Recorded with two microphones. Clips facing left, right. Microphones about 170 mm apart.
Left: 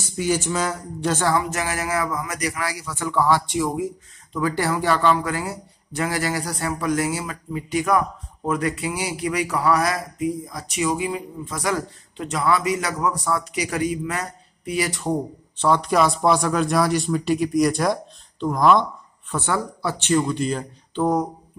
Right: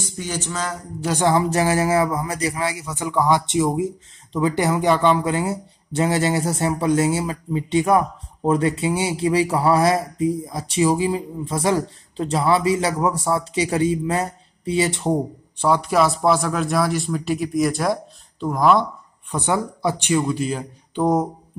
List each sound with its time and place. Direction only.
0.2 s speech: 10° left (ahead or behind)
1.0 s speech: 15° right (ahead or behind)
1.4 s a man's voice: 35° right (ahead or behind)
15.5 s speech: 10° right (ahead or behind)
19.3 s speech: 20° right (ahead or behind)